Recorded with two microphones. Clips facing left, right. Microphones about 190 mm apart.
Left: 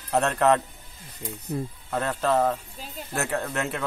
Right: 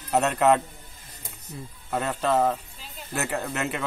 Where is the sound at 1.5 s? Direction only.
60° left (ahead or behind).